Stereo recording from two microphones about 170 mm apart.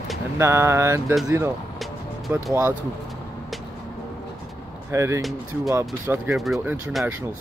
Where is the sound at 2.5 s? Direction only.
15° right (ahead or behind).